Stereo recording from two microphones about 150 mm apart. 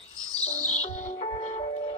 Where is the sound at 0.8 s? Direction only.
55° left (ahead or behind).